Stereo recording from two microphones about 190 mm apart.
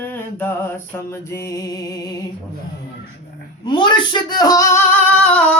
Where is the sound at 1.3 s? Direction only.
15° left (ahead or behind).